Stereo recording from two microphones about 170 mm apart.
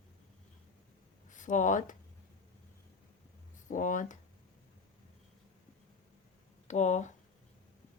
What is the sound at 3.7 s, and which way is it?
Speech, 50° left (ahead or behind).